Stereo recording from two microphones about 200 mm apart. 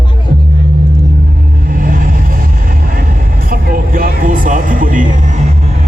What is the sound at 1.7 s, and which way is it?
Vehicle, 45° right (ahead or behind).